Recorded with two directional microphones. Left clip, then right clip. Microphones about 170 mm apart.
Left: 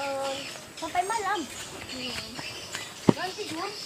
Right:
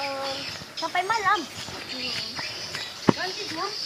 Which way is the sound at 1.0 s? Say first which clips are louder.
Right 6 dB; 5° right (ahead or behind).